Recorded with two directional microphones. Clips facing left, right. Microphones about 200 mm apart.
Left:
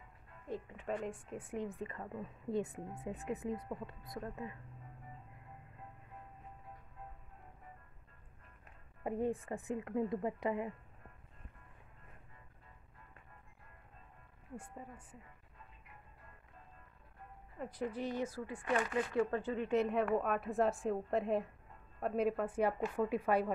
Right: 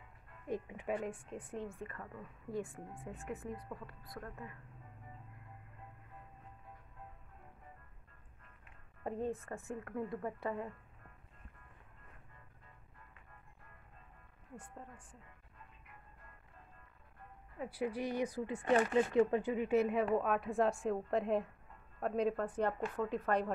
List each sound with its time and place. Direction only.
0.5 s a woman's voice: 15° right (ahead or behind); by 4.6 s 20° left (ahead or behind)
9.0 s a woman's voice: 10° left (ahead or behind)
14.6 s a woman's voice: 5° left (ahead or behind)
17.6 s speech: 10° right (ahead or behind); by 19.2 s 25° right (ahead or behind)
19.3 s a woman's voice: 15° right (ahead or behind); by 23.5 s 10° left (ahead or behind)